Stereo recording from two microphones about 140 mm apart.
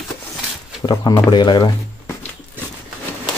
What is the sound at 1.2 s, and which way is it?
Speech, 30° left (ahead or behind).